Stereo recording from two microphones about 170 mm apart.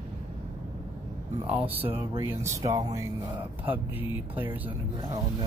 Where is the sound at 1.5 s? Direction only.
10° right (ahead or behind).